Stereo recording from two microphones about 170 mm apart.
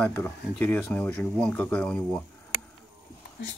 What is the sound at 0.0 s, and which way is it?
Speech, 10° left (ahead or behind).